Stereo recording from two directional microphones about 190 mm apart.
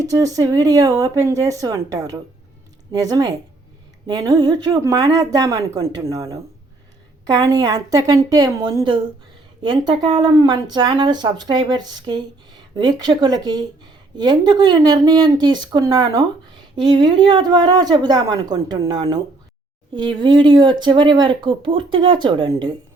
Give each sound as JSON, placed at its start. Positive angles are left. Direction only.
{"t": 0.0, "sound": "speech", "side_deg": -15}